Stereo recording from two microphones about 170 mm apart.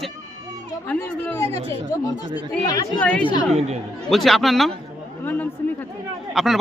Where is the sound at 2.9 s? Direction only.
10° left (ahead or behind).